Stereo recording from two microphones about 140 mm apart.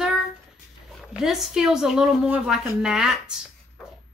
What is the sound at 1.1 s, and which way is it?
A woman's voice, 5° right (ahead or behind).